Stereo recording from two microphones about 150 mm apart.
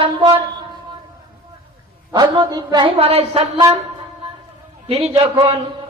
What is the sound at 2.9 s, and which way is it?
Speech, 40° right (ahead or behind).